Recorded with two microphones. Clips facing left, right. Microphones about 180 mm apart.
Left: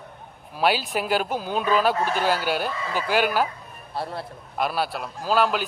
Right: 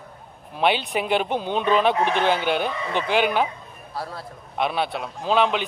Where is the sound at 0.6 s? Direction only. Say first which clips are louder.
Right 1 dB; centre (ahead or behind).